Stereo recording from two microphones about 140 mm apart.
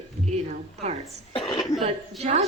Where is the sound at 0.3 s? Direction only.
50° right (ahead or behind).